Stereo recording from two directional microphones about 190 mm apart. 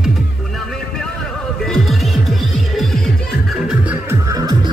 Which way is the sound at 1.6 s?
Centre (ahead or behind).